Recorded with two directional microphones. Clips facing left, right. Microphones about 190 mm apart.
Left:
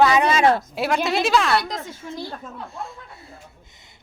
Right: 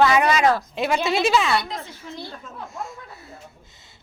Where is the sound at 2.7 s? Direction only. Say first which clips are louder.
Right 1 dB; 30° left (ahead or behind).